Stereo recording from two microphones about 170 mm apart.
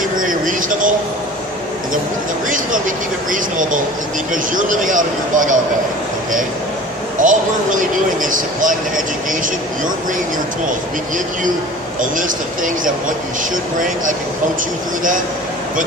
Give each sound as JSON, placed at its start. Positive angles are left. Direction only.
{"t": 0.2, "sound": "a sound", "side_deg": -50}
{"t": 2.5, "sound": "speech", "side_deg": -50}
{"t": 7.2, "sound": "speech", "side_deg": -50}
{"t": 13.7, "sound": "speech", "side_deg": -50}